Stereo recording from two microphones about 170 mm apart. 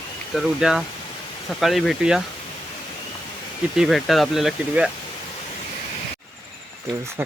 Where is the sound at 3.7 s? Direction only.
Centre (ahead or behind).